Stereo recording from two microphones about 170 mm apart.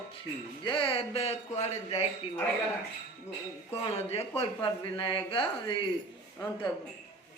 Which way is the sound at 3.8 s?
35° left (ahead or behind).